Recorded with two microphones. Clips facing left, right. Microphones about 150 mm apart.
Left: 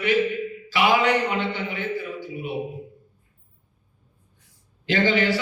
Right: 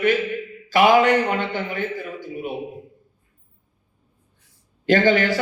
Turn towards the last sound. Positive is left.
turn(degrees=-45)  # may be behind; listen again after turning